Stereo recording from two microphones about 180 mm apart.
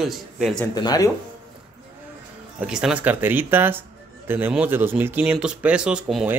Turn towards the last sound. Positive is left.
turn(degrees=-5)  # may be behind; listen again after turning